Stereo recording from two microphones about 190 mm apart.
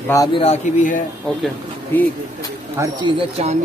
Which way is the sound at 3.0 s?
35° right (ahead or behind).